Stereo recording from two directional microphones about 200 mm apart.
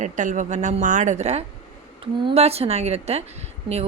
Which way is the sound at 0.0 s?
40° right (ahead or behind).